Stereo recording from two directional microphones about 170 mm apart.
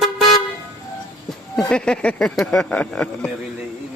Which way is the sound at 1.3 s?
Centre (ahead or behind).